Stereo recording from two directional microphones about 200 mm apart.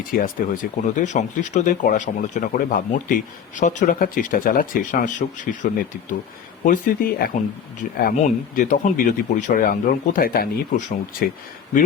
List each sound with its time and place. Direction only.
0.1 s speech: 45° left (ahead or behind)